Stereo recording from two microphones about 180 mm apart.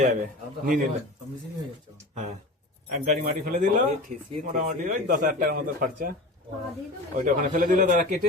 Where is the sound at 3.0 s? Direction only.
45° right (ahead or behind).